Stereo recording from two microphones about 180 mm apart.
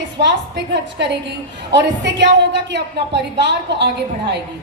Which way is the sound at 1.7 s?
75° right (ahead or behind).